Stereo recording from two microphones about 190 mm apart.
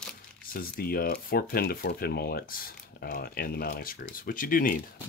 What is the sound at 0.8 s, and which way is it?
Speech, 50° left (ahead or behind).